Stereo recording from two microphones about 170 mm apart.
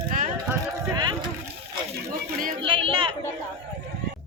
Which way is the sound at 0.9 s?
25° right (ahead or behind).